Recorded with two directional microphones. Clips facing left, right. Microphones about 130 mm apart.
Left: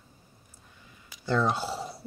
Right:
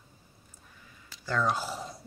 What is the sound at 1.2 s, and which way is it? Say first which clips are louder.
Speech: left 3 dB; 30° left (ahead or behind).